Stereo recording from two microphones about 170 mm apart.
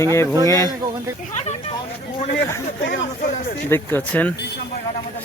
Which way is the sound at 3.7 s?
10° left (ahead or behind).